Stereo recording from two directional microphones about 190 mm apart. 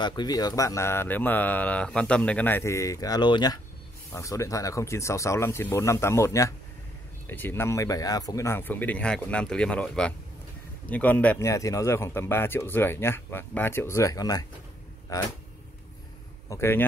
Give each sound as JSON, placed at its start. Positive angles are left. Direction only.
{"t": 0.0, "sound": "speech", "side_deg": 20}
{"t": 16.4, "sound": "speech", "side_deg": 10}